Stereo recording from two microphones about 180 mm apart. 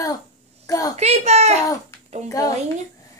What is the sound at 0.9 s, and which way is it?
Speech, 35° right (ahead or behind).